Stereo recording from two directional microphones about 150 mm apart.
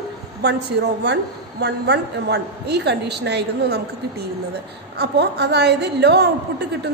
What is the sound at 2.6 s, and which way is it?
Speech, 90° right.